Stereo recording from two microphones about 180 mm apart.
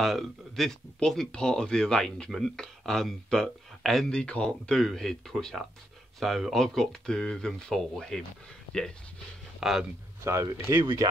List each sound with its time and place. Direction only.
0.0 s speech: centre (ahead or behind)
9.6 s speech: centre (ahead or behind)
10.2 s speech: 15° right (ahead or behind)